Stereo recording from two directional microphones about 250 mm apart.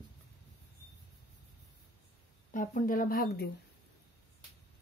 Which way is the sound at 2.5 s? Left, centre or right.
Left.